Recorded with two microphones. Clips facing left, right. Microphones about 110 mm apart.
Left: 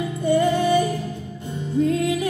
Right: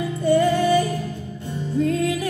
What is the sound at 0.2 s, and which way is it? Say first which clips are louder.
Music: right 1 dB; 20° left (ahead or behind).